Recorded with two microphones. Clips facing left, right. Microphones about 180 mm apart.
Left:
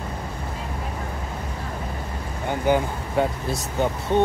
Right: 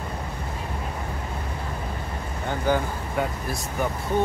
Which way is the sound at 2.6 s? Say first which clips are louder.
Left 3 dB; 20° left (ahead or behind).